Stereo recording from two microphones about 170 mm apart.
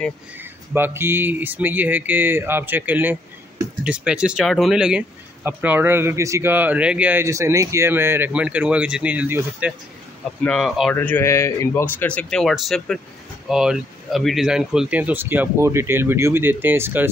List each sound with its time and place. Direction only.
0.4 s speech: 10° right (ahead or behind)
10.4 s speech: 5° left (ahead or behind); by 17.1 s 15° right (ahead or behind)